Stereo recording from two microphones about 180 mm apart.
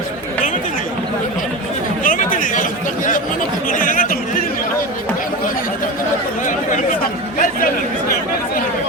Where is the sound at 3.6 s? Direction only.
50° left (ahead or behind).